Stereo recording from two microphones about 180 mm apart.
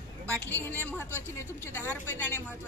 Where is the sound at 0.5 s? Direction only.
10° left (ahead or behind).